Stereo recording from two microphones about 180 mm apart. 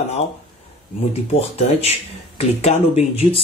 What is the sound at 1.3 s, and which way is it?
Speech, 35° left (ahead or behind).